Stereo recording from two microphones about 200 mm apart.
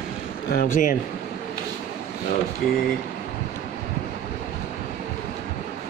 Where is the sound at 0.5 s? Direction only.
45° left (ahead or behind).